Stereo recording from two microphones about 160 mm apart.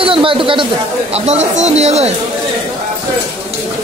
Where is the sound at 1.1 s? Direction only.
45° right (ahead or behind).